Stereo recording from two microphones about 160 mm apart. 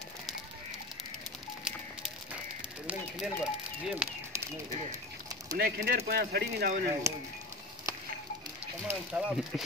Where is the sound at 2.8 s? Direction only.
5° right (ahead or behind).